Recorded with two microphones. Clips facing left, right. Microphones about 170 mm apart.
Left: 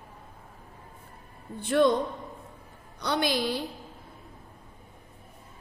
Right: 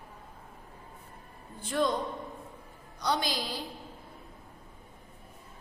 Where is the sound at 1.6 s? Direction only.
65° left (ahead or behind).